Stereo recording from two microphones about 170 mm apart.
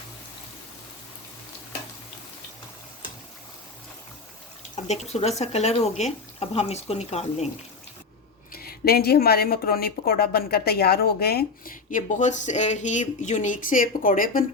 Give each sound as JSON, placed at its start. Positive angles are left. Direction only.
{"t": 4.9, "sound": "speech", "side_deg": 40}
{"t": 8.5, "sound": "speech", "side_deg": 65}